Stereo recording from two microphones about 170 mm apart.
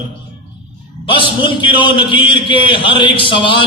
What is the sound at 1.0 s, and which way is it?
A man's voice, 30° left (ahead or behind).